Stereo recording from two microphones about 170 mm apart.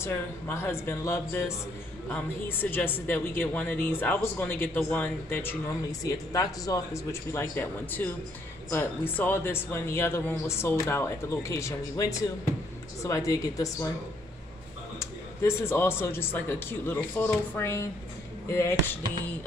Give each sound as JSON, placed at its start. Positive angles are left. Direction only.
{"t": 0.0, "sound": "a man's voice", "side_deg": 15}
{"t": 15.0, "sound": "a man's voice", "side_deg": 15}